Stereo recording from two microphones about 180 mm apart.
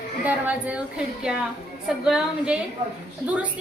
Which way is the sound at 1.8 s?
5° right (ahead or behind).